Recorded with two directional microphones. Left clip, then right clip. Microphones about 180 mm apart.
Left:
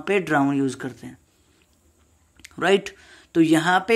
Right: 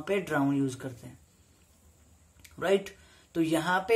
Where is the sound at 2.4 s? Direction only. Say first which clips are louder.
Left 7 dB; 45° left (ahead or behind).